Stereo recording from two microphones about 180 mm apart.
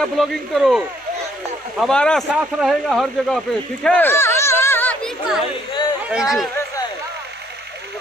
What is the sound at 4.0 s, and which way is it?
Chatter, 15° left (ahead or behind).